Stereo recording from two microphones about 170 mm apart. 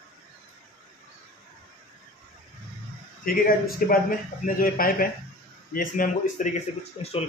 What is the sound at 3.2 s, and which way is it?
Speech, 55° left (ahead or behind).